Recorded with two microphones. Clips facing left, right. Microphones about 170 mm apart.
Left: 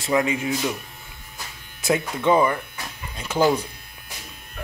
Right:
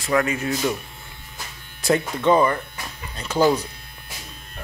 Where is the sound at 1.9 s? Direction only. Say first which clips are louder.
Right 1 dB; 10° left (ahead or behind).